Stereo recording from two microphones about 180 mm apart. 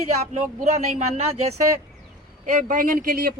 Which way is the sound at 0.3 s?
40° right (ahead or behind).